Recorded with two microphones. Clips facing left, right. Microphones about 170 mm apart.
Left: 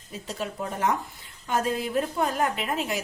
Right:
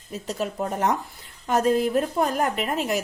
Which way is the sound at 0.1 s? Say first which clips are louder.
Right 4 dB; 40° right (ahead or behind).